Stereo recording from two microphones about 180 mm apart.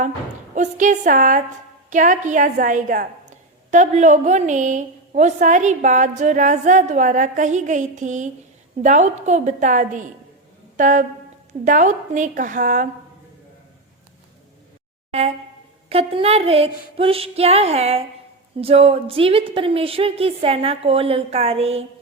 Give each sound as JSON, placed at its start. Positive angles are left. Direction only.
{"t": 0.5, "sound": "a woman's voice", "side_deg": -45}
{"t": 10.8, "sound": "a sound", "side_deg": -45}
{"t": 11.6, "sound": "a woman's voice", "side_deg": -45}
{"t": 15.1, "sound": "a woman's voice", "side_deg": -35}